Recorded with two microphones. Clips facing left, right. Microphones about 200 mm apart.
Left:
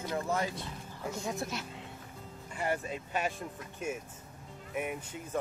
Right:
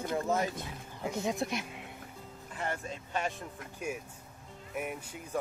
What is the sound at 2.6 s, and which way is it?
Speech, 10° left (ahead or behind).